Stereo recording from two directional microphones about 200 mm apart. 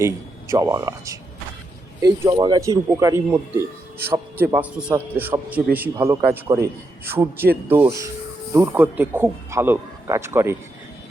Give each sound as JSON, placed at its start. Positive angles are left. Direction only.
{"t": 0.0, "sound": "a man's voice", "side_deg": -15}